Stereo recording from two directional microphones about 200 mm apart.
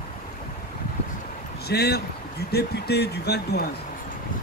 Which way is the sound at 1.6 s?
55° left (ahead or behind).